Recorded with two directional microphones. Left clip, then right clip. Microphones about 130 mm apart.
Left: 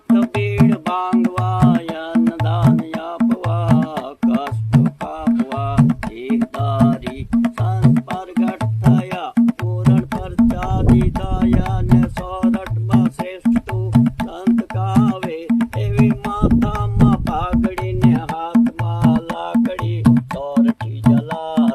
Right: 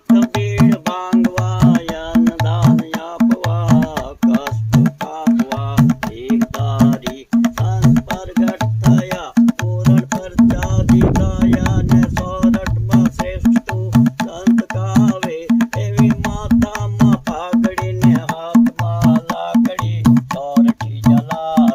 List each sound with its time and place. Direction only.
0.1 s music: 50° right (ahead or behind); by 21.1 s 35° right (ahead or behind)